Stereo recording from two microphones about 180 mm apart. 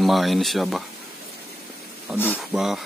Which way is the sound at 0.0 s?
Centre (ahead or behind).